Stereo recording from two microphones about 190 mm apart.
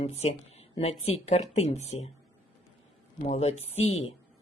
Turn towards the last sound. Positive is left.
turn(degrees=35)  # may be behind; listen again after turning